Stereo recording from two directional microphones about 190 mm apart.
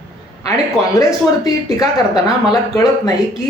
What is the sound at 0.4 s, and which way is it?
Speech, 15° left (ahead or behind).